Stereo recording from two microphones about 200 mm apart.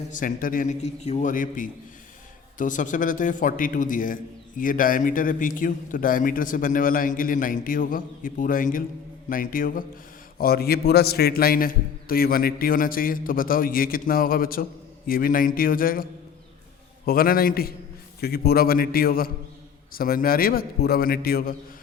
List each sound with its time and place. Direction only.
0.1 s a man's voice: 40° left (ahead or behind)
17.1 s a man's voice: 45° left (ahead or behind)